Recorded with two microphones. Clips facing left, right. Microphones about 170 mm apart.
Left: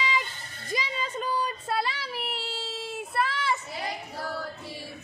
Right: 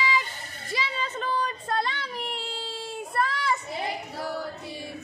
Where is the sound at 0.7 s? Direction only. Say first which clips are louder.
Even; 15° left (ahead or behind).